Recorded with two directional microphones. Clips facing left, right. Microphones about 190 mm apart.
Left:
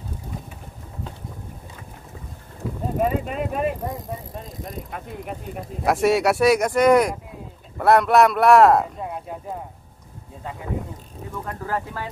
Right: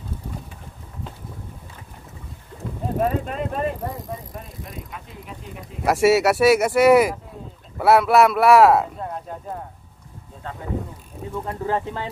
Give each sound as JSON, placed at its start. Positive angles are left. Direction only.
{"t": 3.0, "sound": "speech", "side_deg": 5}
{"t": 4.6, "sound": "speech", "side_deg": 55}
{"t": 5.9, "sound": "speech", "side_deg": -5}
{"t": 9.0, "sound": "a sound", "side_deg": 10}
{"t": 11.4, "sound": "speech", "side_deg": -25}